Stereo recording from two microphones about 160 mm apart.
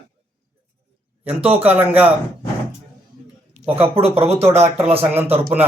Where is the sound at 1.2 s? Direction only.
10° right (ahead or behind).